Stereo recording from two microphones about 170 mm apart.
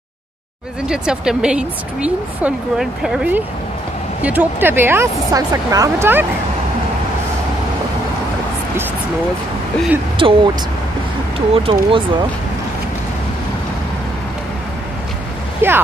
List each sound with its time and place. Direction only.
0.8 s speech: 5° right (ahead or behind)
10.1 s speech: 30° right (ahead or behind)
11.5 s speech: 35° right (ahead or behind)
15.6 s speech: 15° right (ahead or behind)